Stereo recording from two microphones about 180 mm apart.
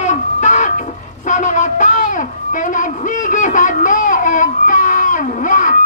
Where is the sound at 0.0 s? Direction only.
40° left (ahead or behind).